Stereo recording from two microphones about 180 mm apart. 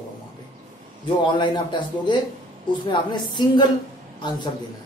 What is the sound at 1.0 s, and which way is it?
Speech, 25° left (ahead or behind).